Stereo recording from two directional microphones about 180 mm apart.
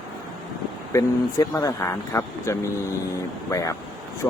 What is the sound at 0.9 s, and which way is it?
Speech, 20° left (ahead or behind).